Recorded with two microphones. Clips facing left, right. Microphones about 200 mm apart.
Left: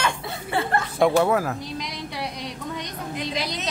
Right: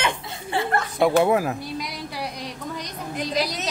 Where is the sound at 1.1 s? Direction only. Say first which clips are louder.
Right 1 dB; 20° right (ahead or behind).